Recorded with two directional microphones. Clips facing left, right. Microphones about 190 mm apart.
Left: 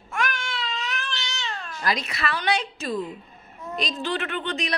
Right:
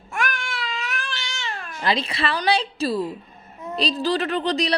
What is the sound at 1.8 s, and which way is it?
A woman's voice, 30° right (ahead or behind).